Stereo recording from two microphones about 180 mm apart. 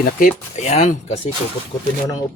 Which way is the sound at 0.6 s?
40° left (ahead or behind).